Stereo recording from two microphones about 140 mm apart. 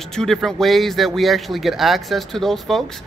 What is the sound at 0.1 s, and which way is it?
Speech, 5° left (ahead or behind).